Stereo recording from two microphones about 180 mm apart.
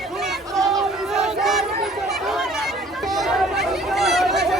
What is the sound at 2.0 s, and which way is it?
Chatter, centre (ahead or behind).